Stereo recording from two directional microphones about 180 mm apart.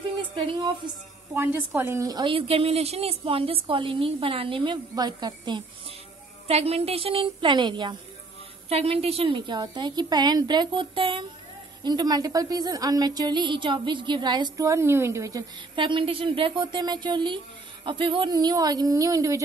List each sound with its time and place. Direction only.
0.8 s a woman's voice: 25° right (ahead or behind)
1.3 s a woman's voice: 10° right (ahead or behind)